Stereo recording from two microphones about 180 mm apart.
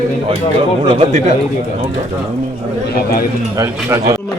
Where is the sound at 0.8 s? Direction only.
30° right (ahead or behind).